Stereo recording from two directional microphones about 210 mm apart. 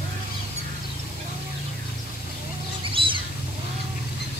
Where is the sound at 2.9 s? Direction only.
25° right (ahead or behind).